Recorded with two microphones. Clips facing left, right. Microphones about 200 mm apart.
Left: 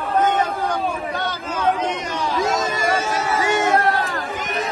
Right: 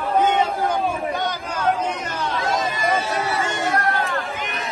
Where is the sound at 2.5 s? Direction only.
45° left (ahead or behind).